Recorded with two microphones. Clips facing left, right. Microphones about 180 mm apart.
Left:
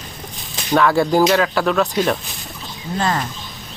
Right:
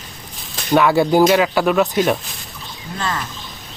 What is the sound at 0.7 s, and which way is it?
Speech, 5° right (ahead or behind).